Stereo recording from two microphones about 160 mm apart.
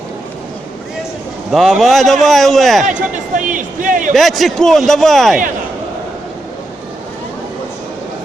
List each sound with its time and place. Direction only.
1.5 s a man's voice: centre (ahead or behind)
2.8 s a man's voice: 50° right (ahead or behind)
4.1 s a man's voice: centre (ahead or behind)